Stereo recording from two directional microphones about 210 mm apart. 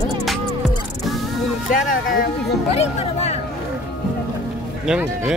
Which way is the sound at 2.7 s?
30° left (ahead or behind).